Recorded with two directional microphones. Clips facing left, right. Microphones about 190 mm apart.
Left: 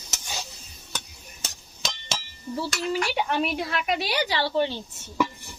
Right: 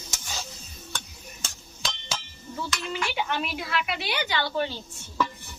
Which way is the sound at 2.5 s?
35° left (ahead or behind).